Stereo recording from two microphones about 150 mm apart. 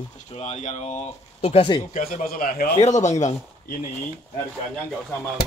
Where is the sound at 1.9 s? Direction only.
70° left (ahead or behind).